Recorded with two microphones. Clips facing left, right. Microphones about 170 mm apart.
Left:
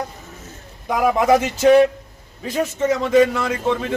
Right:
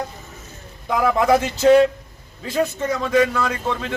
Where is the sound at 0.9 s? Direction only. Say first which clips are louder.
Left 1 dB; 20° left (ahead or behind).